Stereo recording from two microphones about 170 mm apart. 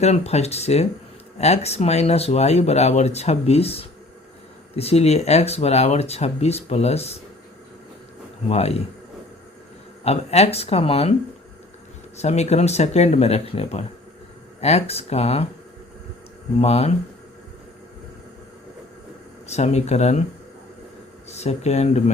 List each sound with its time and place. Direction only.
0.0 s speech: 40° left (ahead or behind)
8.4 s speech: 40° left (ahead or behind)
10.0 s speech: 40° left (ahead or behind)
12.1 s speech: 40° left (ahead or behind)
16.6 s speech: 40° left (ahead or behind)
19.5 s speech: 40° left (ahead or behind)
21.2 s speech: 40° left (ahead or behind)